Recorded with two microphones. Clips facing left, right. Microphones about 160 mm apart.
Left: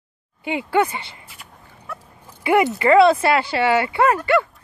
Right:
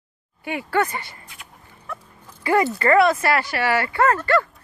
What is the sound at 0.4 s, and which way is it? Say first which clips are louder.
Speech: left 3 dB; 20° left (ahead or behind).